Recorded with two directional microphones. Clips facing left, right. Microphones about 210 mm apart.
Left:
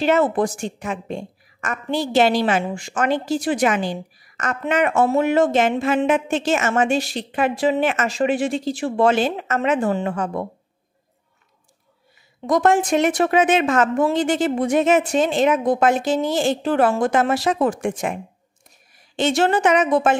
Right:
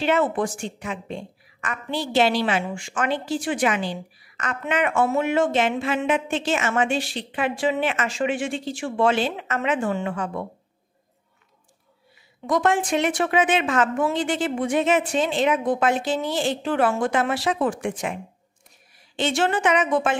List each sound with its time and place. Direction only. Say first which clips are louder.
0.0 s a woman's voice: left 4 dB; 40° left (ahead or behind)
12.4 s a woman's voice: left 4 dB; 40° left (ahead or behind)